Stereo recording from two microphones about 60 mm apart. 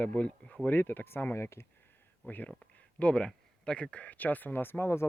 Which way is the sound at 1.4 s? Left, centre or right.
Left.